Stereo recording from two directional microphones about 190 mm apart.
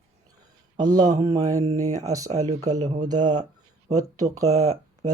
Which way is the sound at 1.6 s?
35° right (ahead or behind).